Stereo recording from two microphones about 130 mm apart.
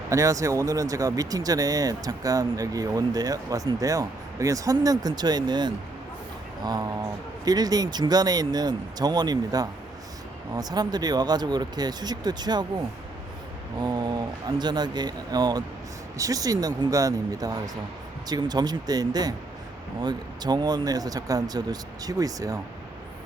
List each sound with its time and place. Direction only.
0.1 s speech: 25° right (ahead or behind)
13.7 s speech: 35° right (ahead or behind)